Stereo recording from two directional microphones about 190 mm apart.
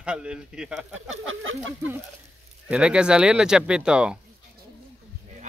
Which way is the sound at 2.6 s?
5° right (ahead or behind).